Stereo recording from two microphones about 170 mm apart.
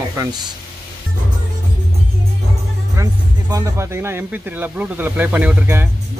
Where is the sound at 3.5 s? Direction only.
15° right (ahead or behind).